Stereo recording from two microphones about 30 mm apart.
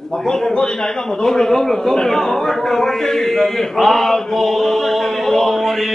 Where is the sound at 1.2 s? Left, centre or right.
Centre.